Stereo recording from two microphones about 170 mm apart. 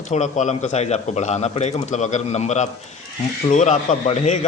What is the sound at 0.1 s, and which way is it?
A man's voice, 45° left (ahead or behind).